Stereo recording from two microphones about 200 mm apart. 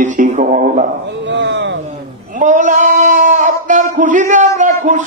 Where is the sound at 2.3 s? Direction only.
40° right (ahead or behind).